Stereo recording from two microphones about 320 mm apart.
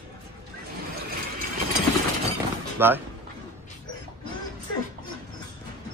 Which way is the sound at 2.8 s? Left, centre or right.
Centre.